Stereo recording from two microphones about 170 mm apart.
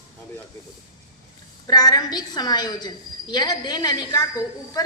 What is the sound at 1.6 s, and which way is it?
A woman's voice, 20° left (ahead or behind).